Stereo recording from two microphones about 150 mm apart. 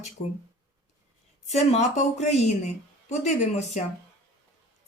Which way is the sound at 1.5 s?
50° left (ahead or behind).